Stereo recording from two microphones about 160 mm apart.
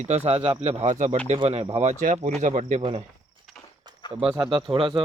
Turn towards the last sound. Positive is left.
turn(degrees=-30)  # may be behind; listen again after turning